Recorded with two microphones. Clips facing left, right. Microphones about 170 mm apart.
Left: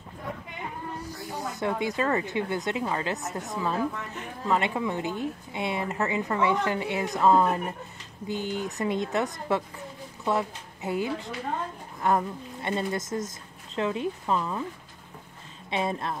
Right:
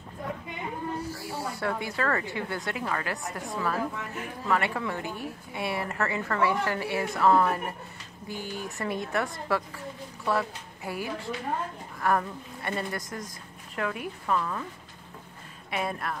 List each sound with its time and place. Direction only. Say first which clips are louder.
1.1 s speech: even; 20° left (ahead or behind)
15.7 s speech: left 3 dB; 25° left (ahead or behind)